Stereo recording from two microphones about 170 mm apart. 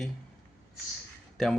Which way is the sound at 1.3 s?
5° left (ahead or behind).